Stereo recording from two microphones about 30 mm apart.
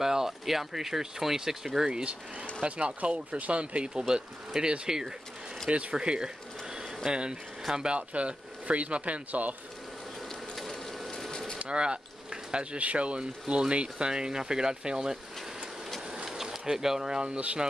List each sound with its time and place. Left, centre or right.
0.0 s speech: centre
2.6 s speech: right
3.0 s speech: right
4.6 s speech: right
5.7 s speech: right
5.9 s speech: right
8.1 s speech: right
10.5 s a sound: centre
11.7 s speech: right
12.7 s speech: right
14.1 s speech: right
16.7 s speech: centre
17.3 s speech: right